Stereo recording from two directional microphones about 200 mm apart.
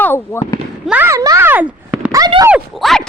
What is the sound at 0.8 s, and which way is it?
Speech, 10° right (ahead or behind).